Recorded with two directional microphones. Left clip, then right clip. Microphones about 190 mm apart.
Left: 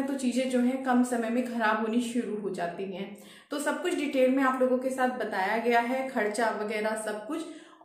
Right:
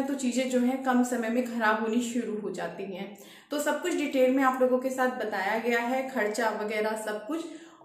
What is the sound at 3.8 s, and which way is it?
A woman's voice, 5° left (ahead or behind).